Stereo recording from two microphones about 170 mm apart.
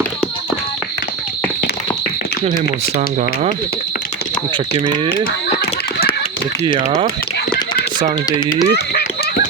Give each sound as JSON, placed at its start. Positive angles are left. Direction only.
{"t": 8.7, "sound": "speech", "side_deg": 70}